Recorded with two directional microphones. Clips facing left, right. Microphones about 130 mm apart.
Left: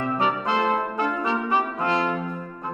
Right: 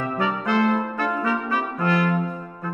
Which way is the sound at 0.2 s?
20° left (ahead or behind).